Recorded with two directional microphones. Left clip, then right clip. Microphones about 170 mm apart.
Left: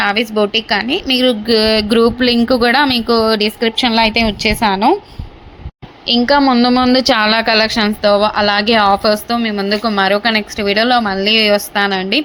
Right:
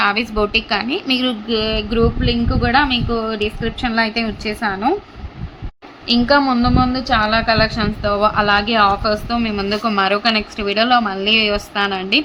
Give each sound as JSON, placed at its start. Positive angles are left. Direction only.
{"t": 0.0, "sound": "a woman's voice", "side_deg": 20}
{"t": 1.5, "sound": "speech", "side_deg": 35}
{"t": 6.1, "sound": "a woman's voice", "side_deg": 25}